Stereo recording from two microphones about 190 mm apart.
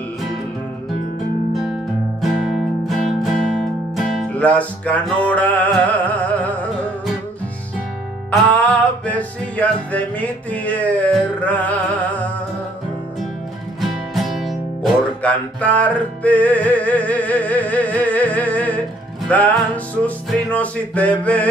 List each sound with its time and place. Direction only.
2.2 s music: centre (ahead or behind)
8.3 s music: 10° left (ahead or behind)
13.7 s music: centre (ahead or behind)